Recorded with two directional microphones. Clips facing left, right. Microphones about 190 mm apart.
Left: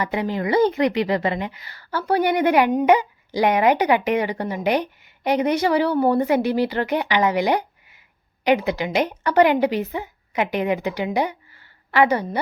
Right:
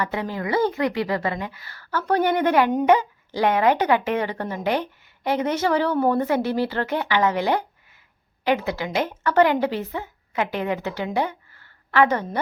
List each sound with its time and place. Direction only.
0.0 s speech: 15° left (ahead or behind)